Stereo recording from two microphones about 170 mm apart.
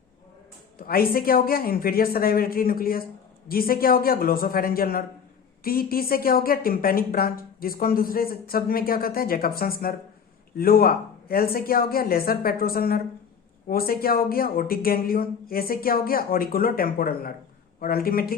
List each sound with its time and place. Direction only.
0.8 s speech: 60° left (ahead or behind)